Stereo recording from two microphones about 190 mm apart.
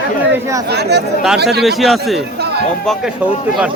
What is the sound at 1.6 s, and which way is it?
Speech, centre (ahead or behind).